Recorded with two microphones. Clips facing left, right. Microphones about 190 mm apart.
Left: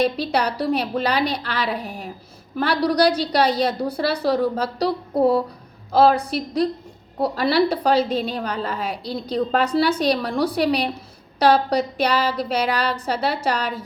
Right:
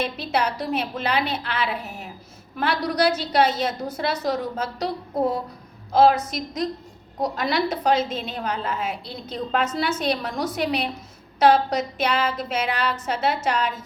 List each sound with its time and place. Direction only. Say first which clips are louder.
0.0 s a woman's voice: left 4 dB; 35° left (ahead or behind)
4.9 s speech: left 5 dB; 65° left (ahead or behind)
5.9 s a woman's voice: left 1 dB; 35° left (ahead or behind)